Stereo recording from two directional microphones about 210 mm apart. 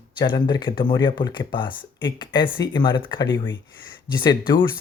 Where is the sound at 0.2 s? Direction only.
20° left (ahead or behind).